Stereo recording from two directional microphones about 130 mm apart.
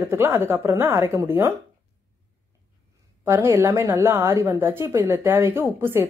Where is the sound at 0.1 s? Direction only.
15° right (ahead or behind).